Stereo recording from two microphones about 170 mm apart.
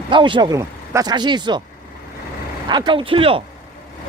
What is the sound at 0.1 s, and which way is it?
Speech, 30° right (ahead or behind).